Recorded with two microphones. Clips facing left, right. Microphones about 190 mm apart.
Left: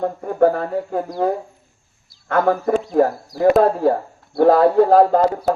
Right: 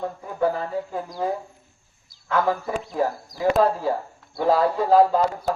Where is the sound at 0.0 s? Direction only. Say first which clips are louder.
Left 8 dB; 55° left (ahead or behind).